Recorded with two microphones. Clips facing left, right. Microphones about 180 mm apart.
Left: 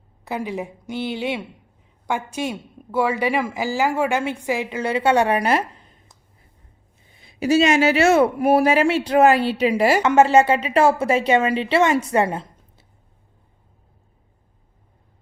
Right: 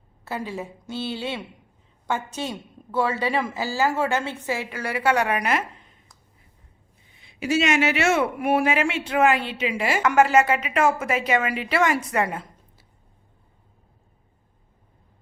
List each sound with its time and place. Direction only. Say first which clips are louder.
0.3 s a woman's voice: left 4 dB; 15° left (ahead or behind); by 6.0 s 35° left (ahead or behind)
7.2 s speech: left 6 dB; 40° left (ahead or behind)
10.0 s a woman's voice: left 1 dB; 25° left (ahead or behind)